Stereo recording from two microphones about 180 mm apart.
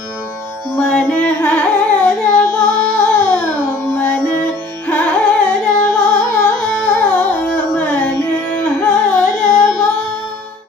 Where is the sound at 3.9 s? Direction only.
10° left (ahead or behind).